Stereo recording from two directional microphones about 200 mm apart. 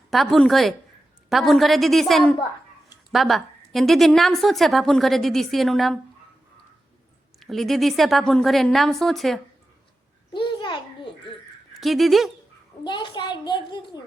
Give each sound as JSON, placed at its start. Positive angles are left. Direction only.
{"t": 0.1, "sound": "a woman's voice", "side_deg": 0}
{"t": 7.3, "sound": "a woman's voice", "side_deg": 0}
{"t": 10.3, "sound": "babbling", "side_deg": 25}
{"t": 11.7, "sound": "speech", "side_deg": 0}
{"t": 12.8, "sound": "a child's voice", "side_deg": 25}